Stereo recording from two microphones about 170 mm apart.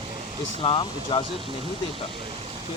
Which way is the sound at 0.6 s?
30° left (ahead or behind).